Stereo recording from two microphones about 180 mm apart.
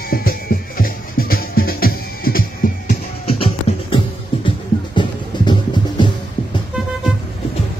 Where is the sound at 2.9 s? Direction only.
35° left (ahead or behind).